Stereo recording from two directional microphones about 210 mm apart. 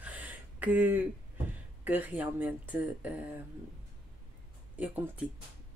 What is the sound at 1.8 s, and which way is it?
Speech, 10° right (ahead or behind).